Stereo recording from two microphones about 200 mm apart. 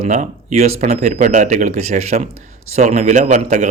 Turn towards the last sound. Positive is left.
turn(degrees=-35)  # may be behind; listen again after turning